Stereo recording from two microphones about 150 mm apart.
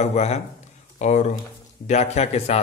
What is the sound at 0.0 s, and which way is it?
Speech, 45° left (ahead or behind).